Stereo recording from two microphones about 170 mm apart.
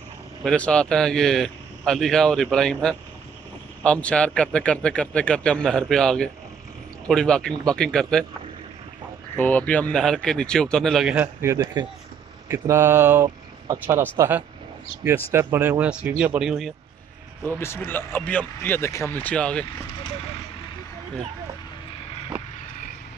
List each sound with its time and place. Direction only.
0.4 s a man's voice: 5° left (ahead or behind)
9.4 s a man's voice: 10° left (ahead or behind)
11.4 s speech: 20° right (ahead or behind); by 16.7 s centre (ahead or behind)
17.6 s speech: 15° left (ahead or behind)